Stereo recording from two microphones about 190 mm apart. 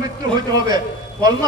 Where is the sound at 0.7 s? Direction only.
20° right (ahead or behind).